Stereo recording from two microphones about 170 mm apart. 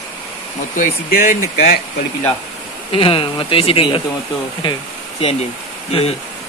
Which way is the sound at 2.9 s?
35° left (ahead or behind).